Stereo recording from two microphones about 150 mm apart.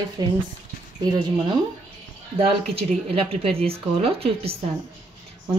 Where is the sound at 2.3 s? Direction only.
40° right (ahead or behind).